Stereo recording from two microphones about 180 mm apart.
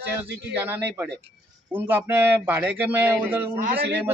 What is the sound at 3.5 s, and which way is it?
Speech, 50° right (ahead or behind).